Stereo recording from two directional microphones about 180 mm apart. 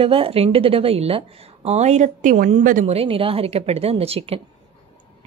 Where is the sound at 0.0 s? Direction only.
30° right (ahead or behind).